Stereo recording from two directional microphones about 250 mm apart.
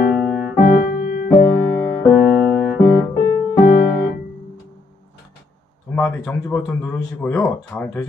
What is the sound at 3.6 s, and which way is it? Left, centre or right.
Music, left.